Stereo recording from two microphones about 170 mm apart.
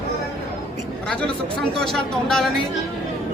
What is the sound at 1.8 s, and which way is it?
Speech, centre (ahead or behind).